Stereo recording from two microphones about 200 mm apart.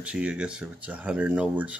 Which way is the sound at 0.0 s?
5° right (ahead or behind).